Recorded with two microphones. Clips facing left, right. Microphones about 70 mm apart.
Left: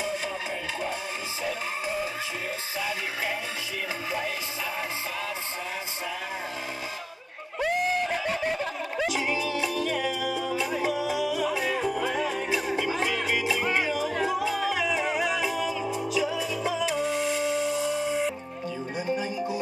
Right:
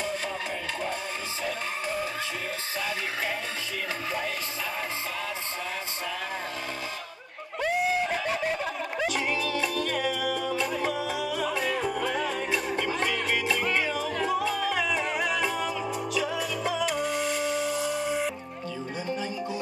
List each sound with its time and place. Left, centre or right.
1.4 s music: centre
7.6 s music: centre
18.9 s music: centre